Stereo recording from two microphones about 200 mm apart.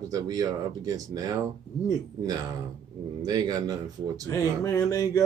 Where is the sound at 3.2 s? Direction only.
20° right (ahead or behind).